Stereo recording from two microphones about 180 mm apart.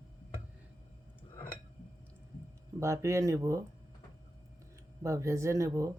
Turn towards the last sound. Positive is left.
turn(degrees=-15)  # may be behind; listen again after turning